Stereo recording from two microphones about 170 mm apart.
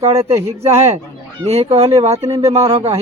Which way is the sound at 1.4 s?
40° right (ahead or behind).